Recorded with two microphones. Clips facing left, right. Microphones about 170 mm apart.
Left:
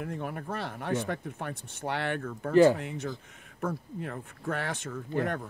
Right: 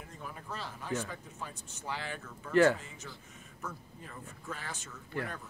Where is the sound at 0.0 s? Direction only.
65° left (ahead or behind).